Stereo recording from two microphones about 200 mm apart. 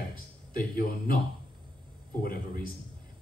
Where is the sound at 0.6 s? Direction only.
45° left (ahead or behind).